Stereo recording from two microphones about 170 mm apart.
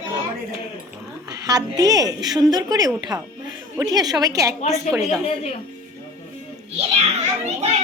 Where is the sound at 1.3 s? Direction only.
20° right (ahead or behind).